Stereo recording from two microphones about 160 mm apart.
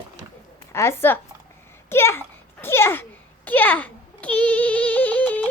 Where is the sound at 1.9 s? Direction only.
15° left (ahead or behind).